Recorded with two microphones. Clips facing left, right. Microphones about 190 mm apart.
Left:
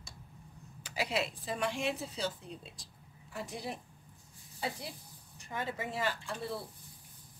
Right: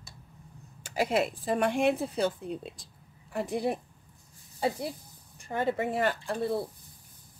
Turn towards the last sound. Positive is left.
turn(degrees=-45)  # may be behind; listen again after turning